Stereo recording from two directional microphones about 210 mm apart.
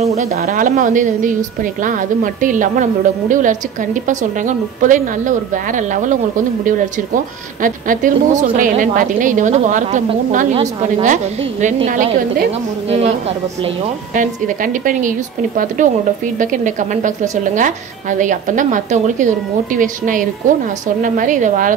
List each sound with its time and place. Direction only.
0.0 s a woman's voice: 30° right (ahead or behind)
14.1 s a woman's voice: 40° right (ahead or behind)